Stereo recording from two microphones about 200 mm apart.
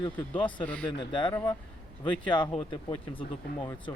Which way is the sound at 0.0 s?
10° left (ahead or behind).